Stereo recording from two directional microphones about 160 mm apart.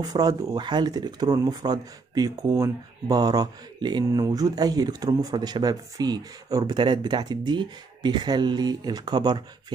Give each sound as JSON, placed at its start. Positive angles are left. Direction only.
{"t": 0.0, "sound": "speech", "side_deg": -25}